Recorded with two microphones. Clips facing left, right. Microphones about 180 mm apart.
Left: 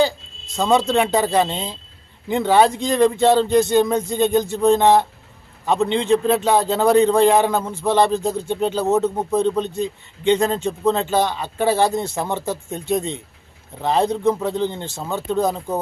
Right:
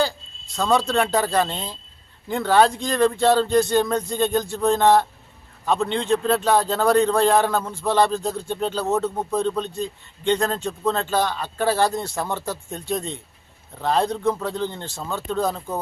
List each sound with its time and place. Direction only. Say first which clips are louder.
0.0 s a sound: left 5 dB; 20° left (ahead or behind)
1.1 s a man's voice: left 3 dB; 15° left (ahead or behind)
5.8 s a man's voice: left 6 dB; 5° left (ahead or behind)